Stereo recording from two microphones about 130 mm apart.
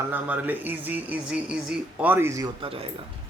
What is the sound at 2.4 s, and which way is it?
Speech, 45° right (ahead or behind).